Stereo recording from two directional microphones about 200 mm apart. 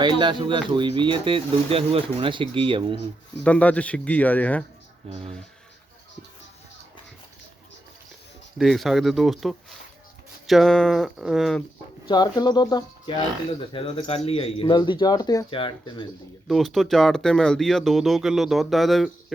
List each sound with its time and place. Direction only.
0.0 s speech: 25° right (ahead or behind)
3.4 s speech: 5° left (ahead or behind)
5.0 s speech: 30° right (ahead or behind)
8.5 s speech: centre (ahead or behind)
12.0 s speech: 20° left (ahead or behind)
16.5 s speech: centre (ahead or behind)